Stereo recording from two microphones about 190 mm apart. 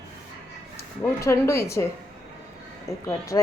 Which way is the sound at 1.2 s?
15° left (ahead or behind).